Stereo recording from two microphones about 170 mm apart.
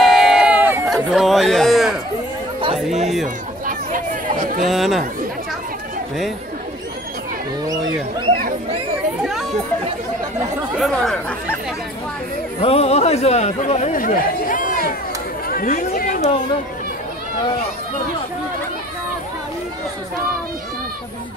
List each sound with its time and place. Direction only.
0.0 s run: centre (ahead or behind)
0.8 s speech: centre (ahead or behind)
3.6 s a sound: 50° right (ahead or behind)
4.6 s speech: centre (ahead or behind)
9.2 s speech: centre (ahead or behind)
10.8 s speech: 5° left (ahead or behind)
12.5 s speech: 35° left (ahead or behind)
13.9 s speech: 55° left (ahead or behind)
15.4 s chatter: 55° left (ahead or behind)